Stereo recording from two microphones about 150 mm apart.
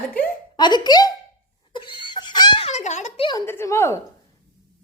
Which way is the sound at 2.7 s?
50° left (ahead or behind).